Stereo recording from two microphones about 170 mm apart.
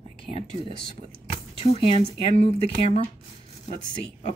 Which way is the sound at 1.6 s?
35° left (ahead or behind).